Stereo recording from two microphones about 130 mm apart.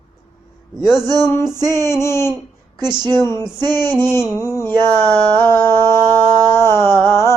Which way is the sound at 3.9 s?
20° left (ahead or behind).